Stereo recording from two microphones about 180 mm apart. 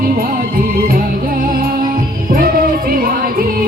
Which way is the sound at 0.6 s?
55° right (ahead or behind).